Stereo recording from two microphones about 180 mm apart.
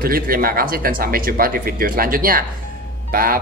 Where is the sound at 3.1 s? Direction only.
55° right (ahead or behind).